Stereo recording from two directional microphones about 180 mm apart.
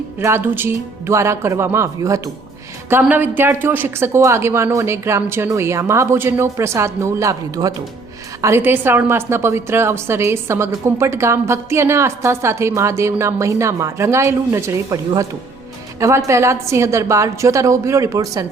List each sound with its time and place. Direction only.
0.2 s a woman's voice: 15° right (ahead or behind)